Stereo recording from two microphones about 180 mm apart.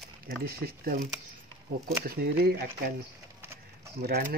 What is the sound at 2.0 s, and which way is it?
Speech, 60° right (ahead or behind).